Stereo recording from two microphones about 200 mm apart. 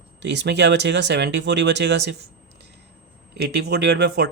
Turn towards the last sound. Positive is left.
turn(degrees=-55)  # may be behind; listen again after turning